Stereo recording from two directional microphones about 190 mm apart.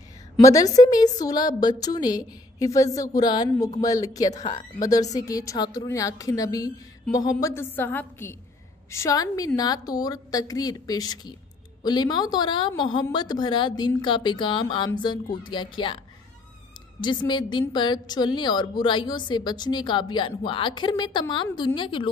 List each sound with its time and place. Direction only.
0.4 s a woman's voice: 15° left (ahead or behind)
17.0 s a woman's voice: 25° left (ahead or behind)